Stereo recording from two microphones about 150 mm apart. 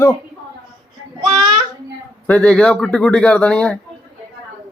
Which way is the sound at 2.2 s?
10° left (ahead or behind).